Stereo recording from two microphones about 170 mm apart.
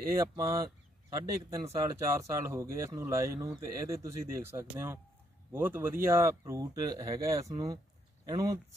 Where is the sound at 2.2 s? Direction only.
20° right (ahead or behind).